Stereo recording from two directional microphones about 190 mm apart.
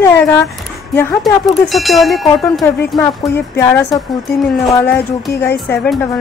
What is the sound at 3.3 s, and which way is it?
A woman's voice, 15° left (ahead or behind).